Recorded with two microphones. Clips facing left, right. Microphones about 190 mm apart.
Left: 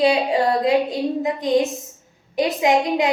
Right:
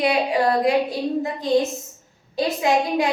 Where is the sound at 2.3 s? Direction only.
20° left (ahead or behind).